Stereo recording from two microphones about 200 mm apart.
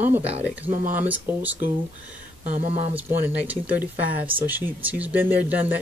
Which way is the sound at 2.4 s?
35° right (ahead or behind).